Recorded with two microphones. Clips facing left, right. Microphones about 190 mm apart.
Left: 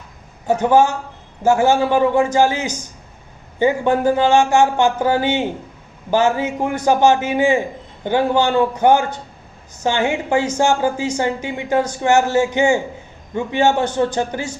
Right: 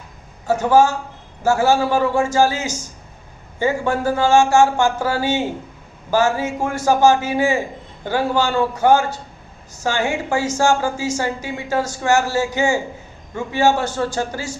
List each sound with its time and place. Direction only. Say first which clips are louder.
0.6 s speech: even; 20° left (ahead or behind)